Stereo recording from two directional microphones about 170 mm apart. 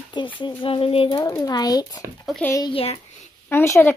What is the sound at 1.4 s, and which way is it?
Speech, 25° left (ahead or behind).